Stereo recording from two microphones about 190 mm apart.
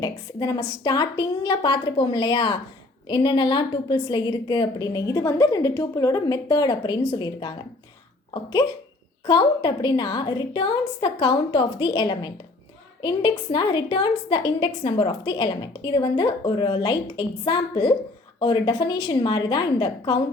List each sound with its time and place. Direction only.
0.0 s a woman's voice: 20° left (ahead or behind)